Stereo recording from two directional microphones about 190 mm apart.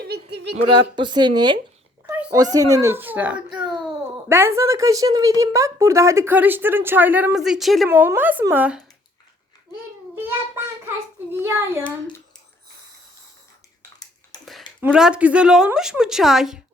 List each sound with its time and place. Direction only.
0.0 s a sound: 60° right (ahead or behind)
0.7 s speech: 25° right (ahead or behind)
2.0 s a sound: 5° right (ahead or behind)
2.3 s a woman's voice: 20° right (ahead or behind); by 7.9 s centre (ahead or behind)
7.9 s a woman's voice: 10° right (ahead or behind)
10.2 s child singing: 10° right (ahead or behind)
14.8 s a woman's voice: 5° right (ahead or behind)